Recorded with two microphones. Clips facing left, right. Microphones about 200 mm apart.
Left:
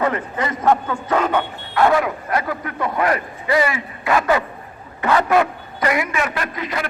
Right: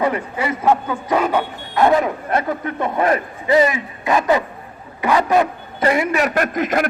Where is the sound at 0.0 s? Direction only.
10° right (ahead or behind).